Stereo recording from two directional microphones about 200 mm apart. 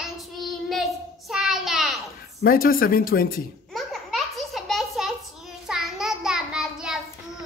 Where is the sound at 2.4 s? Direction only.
45° left (ahead or behind).